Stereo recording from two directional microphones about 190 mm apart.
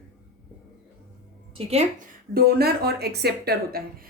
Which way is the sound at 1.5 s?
30° right (ahead or behind).